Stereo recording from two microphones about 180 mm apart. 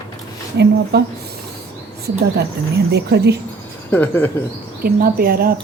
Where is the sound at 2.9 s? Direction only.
65° right (ahead or behind).